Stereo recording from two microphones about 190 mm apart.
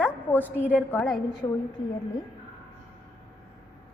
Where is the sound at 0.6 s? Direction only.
5° right (ahead or behind).